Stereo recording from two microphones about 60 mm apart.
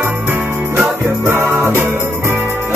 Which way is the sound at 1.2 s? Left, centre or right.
Right.